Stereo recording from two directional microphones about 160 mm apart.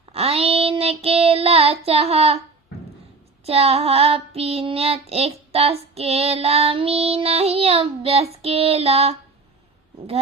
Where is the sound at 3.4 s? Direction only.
40° right (ahead or behind).